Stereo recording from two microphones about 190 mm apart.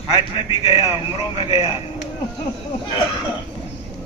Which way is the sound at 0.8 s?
15° right (ahead or behind).